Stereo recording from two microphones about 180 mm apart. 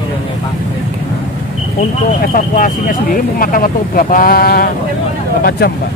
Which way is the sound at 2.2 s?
50° left (ahead or behind).